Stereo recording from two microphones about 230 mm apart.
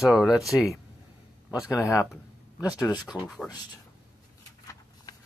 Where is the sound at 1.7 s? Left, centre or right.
Centre.